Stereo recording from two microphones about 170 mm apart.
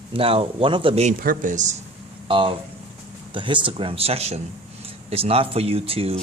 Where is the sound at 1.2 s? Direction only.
55° right (ahead or behind).